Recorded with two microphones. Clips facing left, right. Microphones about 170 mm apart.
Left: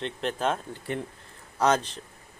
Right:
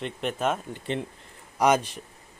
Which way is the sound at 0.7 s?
20° right (ahead or behind).